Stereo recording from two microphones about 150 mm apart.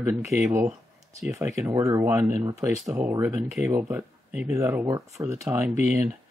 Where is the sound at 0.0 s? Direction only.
15° right (ahead or behind).